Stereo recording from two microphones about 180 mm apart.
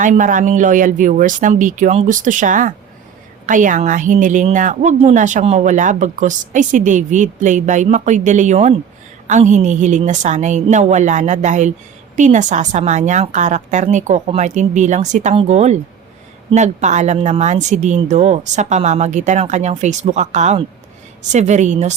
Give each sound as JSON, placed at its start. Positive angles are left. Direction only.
{"t": 0.0, "sound": "a woman's voice", "side_deg": -45}